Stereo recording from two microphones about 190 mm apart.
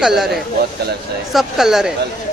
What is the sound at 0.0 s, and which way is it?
Speech, centre (ahead or behind).